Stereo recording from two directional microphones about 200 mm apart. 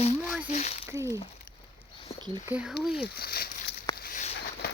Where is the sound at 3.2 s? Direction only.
50° left (ahead or behind).